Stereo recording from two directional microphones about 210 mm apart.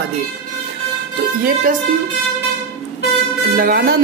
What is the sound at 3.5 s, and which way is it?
Speech, 45° right (ahead or behind).